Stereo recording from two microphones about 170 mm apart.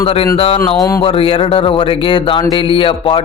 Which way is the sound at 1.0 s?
35° left (ahead or behind).